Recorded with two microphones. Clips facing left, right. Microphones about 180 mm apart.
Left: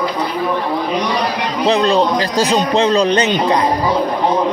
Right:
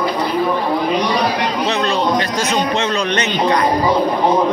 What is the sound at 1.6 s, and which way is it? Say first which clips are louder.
A man's voice: left 7 dB; 35° left (ahead or behind).